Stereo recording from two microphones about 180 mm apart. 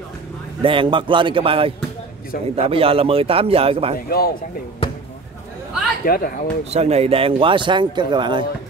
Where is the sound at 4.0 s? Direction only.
60° left (ahead or behind).